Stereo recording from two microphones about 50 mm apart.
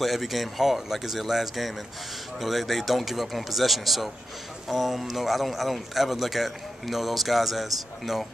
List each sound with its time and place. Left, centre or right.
0.0 s a man's voice: centre